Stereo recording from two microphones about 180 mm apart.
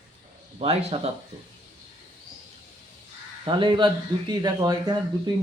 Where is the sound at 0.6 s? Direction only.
35° right (ahead or behind).